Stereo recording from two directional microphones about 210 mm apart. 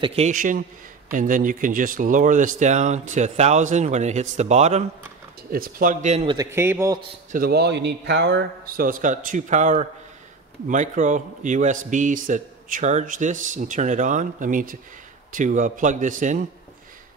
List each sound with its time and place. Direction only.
0.0 s speech: 30° right (ahead or behind)
6.3 s a man's voice: 15° right (ahead or behind)
7.3 s speech: 50° right (ahead or behind)